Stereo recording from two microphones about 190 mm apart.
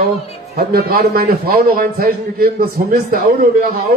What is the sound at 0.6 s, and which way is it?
A man's voice, 55° right (ahead or behind).